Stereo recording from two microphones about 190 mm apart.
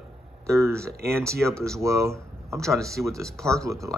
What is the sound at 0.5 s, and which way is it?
Speech, 15° right (ahead or behind).